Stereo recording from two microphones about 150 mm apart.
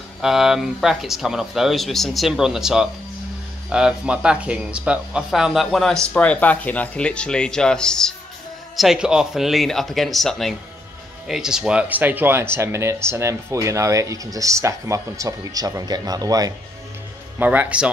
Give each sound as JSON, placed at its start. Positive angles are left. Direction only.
{"t": 0.2, "sound": "speech", "side_deg": -5}
{"t": 17.4, "sound": "speech", "side_deg": -10}